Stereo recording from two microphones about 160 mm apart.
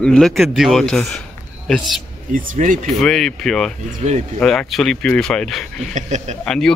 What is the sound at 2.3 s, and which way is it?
Speech, 55° right (ahead or behind).